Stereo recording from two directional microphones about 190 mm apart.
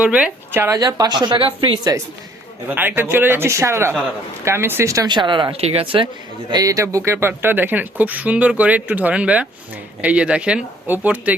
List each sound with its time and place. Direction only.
0.0 s speech: 5° right (ahead or behind); by 2.0 s 25° right (ahead or behind)
2.6 s speech: 10° right (ahead or behind); by 6.1 s 30° right (ahead or behind)
6.5 s speech: 20° right (ahead or behind)